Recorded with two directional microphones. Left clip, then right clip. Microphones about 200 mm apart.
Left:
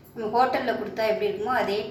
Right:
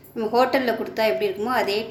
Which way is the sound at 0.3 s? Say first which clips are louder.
Right 3 dB; 55° right (ahead or behind).